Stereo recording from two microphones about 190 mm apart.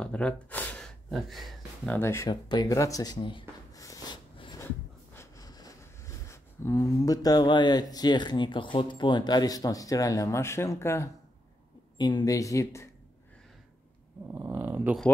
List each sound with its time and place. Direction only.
0.0 s gasp: 5° left (ahead or behind)
2.0 s a sound: 15° left (ahead or behind)
12.0 s speech: 20° left (ahead or behind)
14.2 s dog: 15° right (ahead or behind)